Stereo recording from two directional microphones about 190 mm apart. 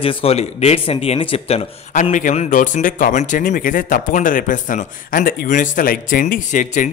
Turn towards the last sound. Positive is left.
turn(degrees=45)  # may be behind; listen again after turning